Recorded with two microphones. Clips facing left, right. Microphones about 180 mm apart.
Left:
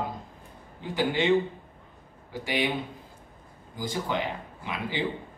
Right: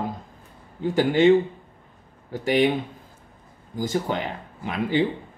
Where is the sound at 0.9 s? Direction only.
45° right (ahead or behind).